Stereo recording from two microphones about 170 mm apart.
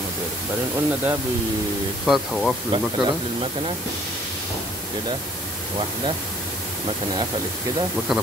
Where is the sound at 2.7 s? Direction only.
25° right (ahead or behind).